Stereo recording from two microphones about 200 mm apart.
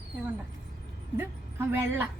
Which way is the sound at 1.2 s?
10° right (ahead or behind).